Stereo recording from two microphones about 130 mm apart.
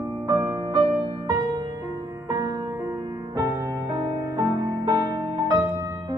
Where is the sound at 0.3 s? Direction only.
35° right (ahead or behind).